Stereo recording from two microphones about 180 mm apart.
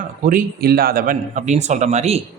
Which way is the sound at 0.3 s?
50° right (ahead or behind).